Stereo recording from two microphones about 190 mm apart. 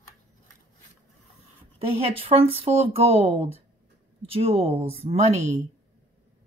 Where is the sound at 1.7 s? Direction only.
30° right (ahead or behind).